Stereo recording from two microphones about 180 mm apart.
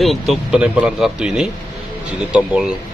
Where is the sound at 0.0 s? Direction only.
Centre (ahead or behind).